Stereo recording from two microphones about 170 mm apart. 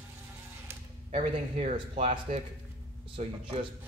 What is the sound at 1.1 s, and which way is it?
Speech, 35° right (ahead or behind).